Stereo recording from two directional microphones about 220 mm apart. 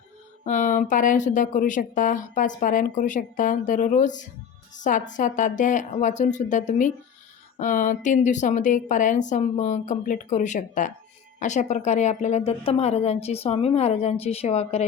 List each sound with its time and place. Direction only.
0.4 s a woman's voice: 35° left (ahead or behind)